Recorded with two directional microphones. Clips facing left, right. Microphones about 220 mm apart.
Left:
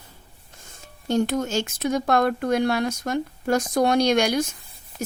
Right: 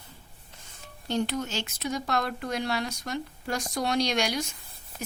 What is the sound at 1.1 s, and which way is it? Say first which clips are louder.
Speech: left 6 dB; 45° left (ahead or behind).